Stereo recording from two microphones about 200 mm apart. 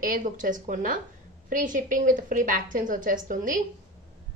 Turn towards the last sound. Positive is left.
turn(degrees=-40)  # may be behind; listen again after turning